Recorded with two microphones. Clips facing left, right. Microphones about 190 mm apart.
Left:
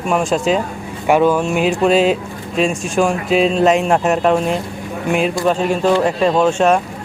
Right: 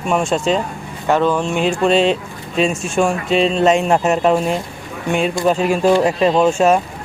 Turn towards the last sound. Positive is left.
turn(degrees=-5)  # may be behind; listen again after turning